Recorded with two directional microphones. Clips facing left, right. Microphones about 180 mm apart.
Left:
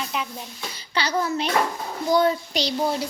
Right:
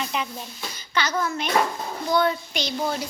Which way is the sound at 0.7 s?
30° left (ahead or behind).